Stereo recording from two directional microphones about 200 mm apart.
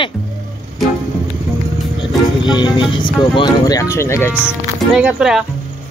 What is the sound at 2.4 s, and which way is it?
Speech, 25° left (ahead or behind).